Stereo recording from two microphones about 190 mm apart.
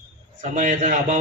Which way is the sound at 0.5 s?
40° right (ahead or behind).